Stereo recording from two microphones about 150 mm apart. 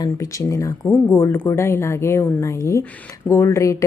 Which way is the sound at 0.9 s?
15° left (ahead or behind).